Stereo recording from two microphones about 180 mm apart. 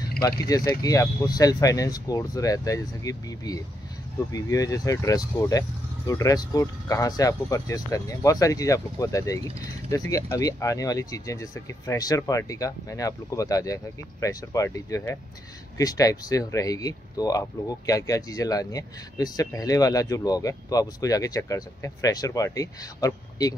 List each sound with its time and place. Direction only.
0.2 s speech: 20° left (ahead or behind)